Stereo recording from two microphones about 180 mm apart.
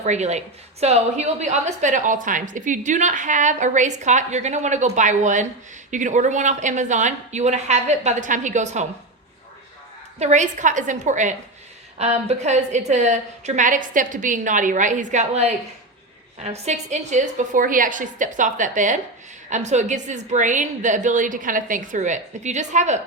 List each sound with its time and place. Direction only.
0.0 s a woman's voice: 40° right (ahead or behind)
10.2 s a woman's voice: 40° right (ahead or behind)